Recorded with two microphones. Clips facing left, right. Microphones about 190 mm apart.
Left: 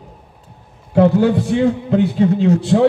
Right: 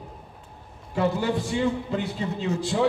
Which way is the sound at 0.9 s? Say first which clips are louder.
Left 11 dB; 65° left (ahead or behind).